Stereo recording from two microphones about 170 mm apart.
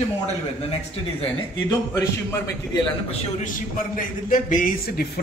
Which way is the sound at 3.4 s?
50° left (ahead or behind).